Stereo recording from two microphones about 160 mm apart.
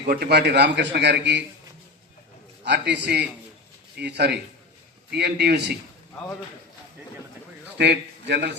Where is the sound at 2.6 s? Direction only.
90° right.